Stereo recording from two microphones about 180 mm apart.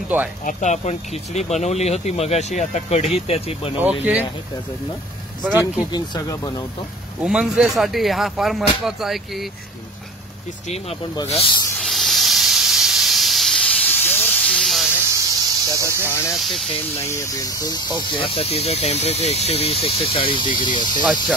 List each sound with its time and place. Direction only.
0.5 s speech: 40° left (ahead or behind)
3.8 s speech: 5° right (ahead or behind)
5.9 s speech: 20° left (ahead or behind)
7.2 s speech: 5° right (ahead or behind)
10.7 s speech: 35° left (ahead or behind)
11.8 s hiss: centre (ahead or behind)
15.0 s cricket: 15° right (ahead or behind)
16.1 s speech: 15° left (ahead or behind)
16.3 s speech: centre (ahead or behind)
16.9 s speech: 15° left (ahead or behind)